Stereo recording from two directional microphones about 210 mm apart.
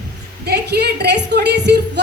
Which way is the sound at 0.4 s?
50° right (ahead or behind).